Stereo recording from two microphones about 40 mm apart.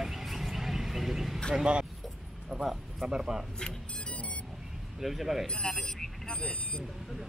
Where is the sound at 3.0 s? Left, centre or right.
Right.